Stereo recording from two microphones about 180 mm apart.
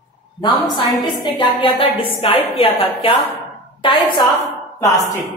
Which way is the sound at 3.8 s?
25° left (ahead or behind).